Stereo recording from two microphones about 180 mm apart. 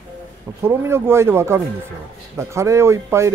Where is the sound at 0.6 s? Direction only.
15° right (ahead or behind).